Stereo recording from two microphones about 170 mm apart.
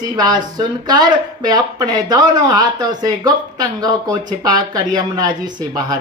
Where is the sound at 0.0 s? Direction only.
25° right (ahead or behind).